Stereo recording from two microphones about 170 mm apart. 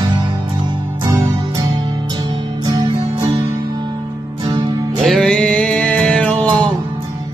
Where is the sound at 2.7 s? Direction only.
25° right (ahead or behind).